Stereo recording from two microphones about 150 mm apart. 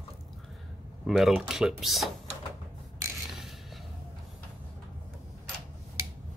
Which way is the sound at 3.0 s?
20° right (ahead or behind).